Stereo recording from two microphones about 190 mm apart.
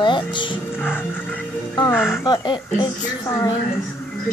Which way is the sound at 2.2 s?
25° left (ahead or behind).